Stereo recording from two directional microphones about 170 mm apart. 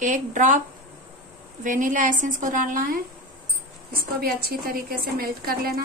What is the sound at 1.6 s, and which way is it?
A woman's voice, 50° right (ahead or behind).